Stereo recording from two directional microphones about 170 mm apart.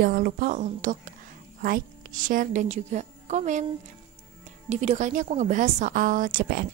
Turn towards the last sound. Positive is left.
turn(degrees=-55)  # may be behind; listen again after turning